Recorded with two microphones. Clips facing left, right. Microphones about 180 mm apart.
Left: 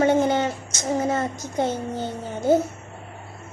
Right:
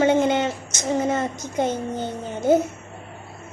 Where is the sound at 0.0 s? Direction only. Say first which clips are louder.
Right 1 dB; 20° right (ahead or behind).